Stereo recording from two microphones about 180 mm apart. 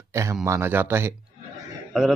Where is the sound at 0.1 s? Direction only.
15° right (ahead or behind).